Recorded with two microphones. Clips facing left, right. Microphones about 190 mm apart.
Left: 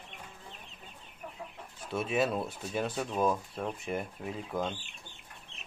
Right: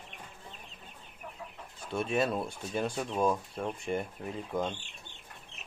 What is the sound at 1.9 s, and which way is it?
Speech, 5° left (ahead or behind).